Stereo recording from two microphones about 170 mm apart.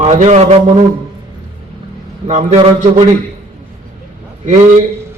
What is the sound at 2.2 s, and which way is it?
Speech, 40° right (ahead or behind).